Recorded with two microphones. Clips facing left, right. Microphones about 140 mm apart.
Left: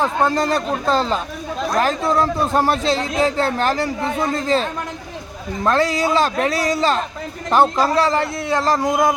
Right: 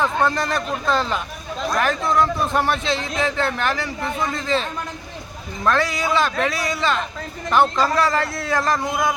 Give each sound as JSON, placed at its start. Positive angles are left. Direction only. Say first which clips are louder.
{"t": 0.0, "sound": "speech", "louder": "left 2 dB", "side_deg": 30}
{"t": 5.6, "sound": "speech", "louder": "left 3 dB", "side_deg": 35}